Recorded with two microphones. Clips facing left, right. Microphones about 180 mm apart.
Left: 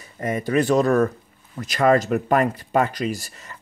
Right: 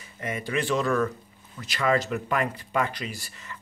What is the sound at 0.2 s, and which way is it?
Speech, 40° left (ahead or behind).